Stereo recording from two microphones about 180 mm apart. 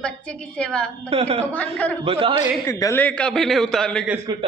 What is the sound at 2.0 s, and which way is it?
Speech, 30° right (ahead or behind).